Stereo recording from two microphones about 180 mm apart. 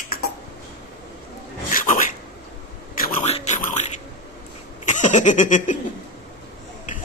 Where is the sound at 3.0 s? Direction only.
45° left (ahead or behind).